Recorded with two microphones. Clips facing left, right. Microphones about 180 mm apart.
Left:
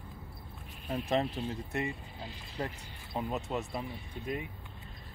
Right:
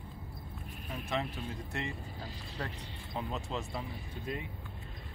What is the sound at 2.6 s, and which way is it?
Speech, 20° left (ahead or behind).